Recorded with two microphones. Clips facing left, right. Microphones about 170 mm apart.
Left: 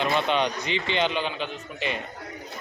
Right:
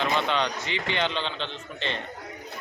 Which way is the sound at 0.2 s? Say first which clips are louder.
Left 2 dB; 15° left (ahead or behind).